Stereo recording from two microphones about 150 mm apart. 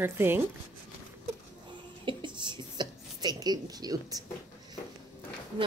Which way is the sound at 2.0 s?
30° right (ahead or behind).